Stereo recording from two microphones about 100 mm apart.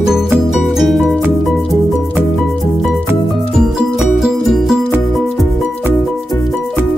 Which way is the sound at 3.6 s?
Centre (ahead or behind).